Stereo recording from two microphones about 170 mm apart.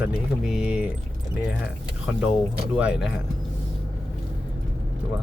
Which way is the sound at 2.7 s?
5° right (ahead or behind).